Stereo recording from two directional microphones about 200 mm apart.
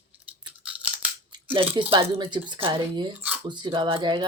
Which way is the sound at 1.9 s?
25° right (ahead or behind).